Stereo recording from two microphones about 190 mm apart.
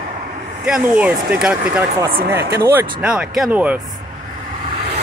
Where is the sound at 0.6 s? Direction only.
5° right (ahead or behind).